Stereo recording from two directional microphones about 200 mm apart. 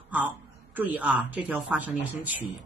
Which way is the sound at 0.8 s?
10° right (ahead or behind).